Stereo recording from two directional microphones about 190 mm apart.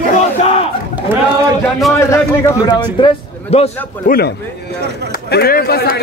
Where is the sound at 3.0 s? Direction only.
30° left (ahead or behind).